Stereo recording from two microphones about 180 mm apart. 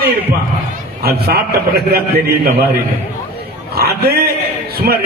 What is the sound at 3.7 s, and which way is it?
Speech, 60° right (ahead or behind).